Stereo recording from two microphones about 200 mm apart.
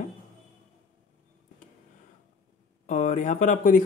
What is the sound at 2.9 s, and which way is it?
Speech, 40° left (ahead or behind).